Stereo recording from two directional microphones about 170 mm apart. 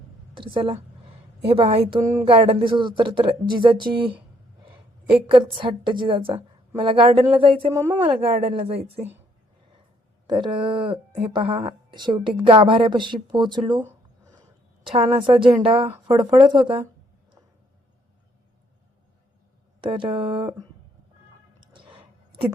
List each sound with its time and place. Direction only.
0.3 s a woman's voice: 30° right (ahead or behind)
2.0 s a woman's voice: 20° right (ahead or behind)
2.2 s a woman's voice: 30° right (ahead or behind)
5.3 s a woman's voice: 30° right (ahead or behind)
10.2 s a woman's voice: 25° right (ahead or behind)
14.8 s a woman's voice: 35° right (ahead or behind)
19.8 s a woman's voice: 30° right (ahead or behind)
21.6 s music: 30° right (ahead or behind)